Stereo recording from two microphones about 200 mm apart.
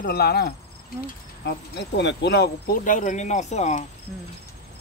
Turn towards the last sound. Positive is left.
turn(degrees=35)  # may be behind; listen again after turning